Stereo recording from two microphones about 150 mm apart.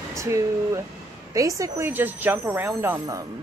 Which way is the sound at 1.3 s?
20° right (ahead or behind).